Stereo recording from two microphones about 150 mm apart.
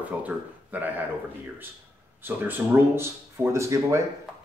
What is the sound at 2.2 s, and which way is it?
Speech, 15° right (ahead or behind).